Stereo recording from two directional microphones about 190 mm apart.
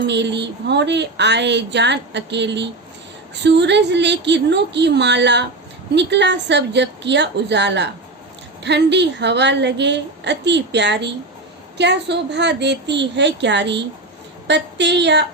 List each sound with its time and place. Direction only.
0.0 s a woman's voice: 65° right (ahead or behind)